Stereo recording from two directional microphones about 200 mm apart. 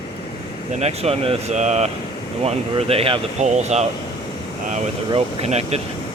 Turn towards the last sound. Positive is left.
turn(degrees=-30)  # may be behind; listen again after turning